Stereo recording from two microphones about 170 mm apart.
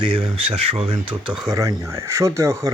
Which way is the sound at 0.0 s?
30° right (ahead or behind).